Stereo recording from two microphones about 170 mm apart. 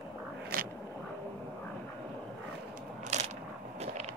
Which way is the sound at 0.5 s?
60° right (ahead or behind).